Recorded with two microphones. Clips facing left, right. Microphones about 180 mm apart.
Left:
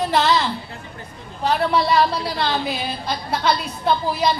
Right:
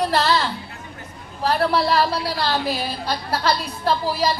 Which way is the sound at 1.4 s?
5° right (ahead or behind).